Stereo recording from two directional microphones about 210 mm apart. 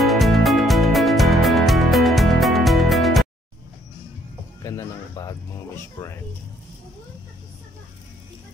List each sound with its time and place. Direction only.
0.0 s music: centre (ahead or behind)
4.6 s music: 15° left (ahead or behind)
6.0 s a sound: 20° left (ahead or behind)